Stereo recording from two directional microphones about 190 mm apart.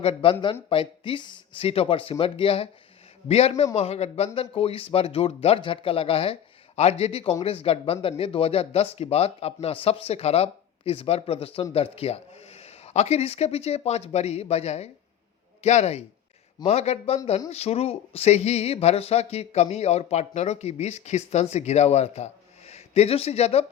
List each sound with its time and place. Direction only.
0.0 s a man's voice: 30° left (ahead or behind)